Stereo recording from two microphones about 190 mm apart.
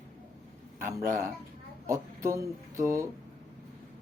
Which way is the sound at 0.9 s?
15° right (ahead or behind).